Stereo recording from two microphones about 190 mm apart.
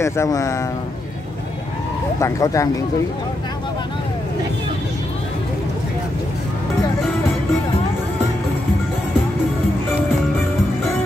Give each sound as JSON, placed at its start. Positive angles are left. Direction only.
{"t": 0.0, "sound": "speech", "side_deg": 15}
{"t": 2.1, "sound": "speech", "side_deg": 15}